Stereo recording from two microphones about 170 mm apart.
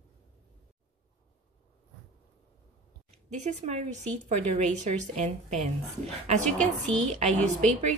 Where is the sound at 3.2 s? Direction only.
40° right (ahead or behind).